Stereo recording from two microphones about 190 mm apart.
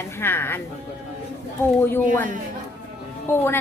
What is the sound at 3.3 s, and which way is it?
Speech, 10° left (ahead or behind).